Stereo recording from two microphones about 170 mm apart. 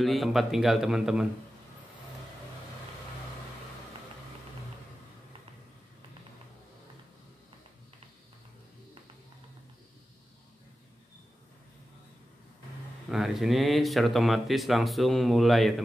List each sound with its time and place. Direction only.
0.0 s speech: centre (ahead or behind)
13.1 s speech: centre (ahead or behind)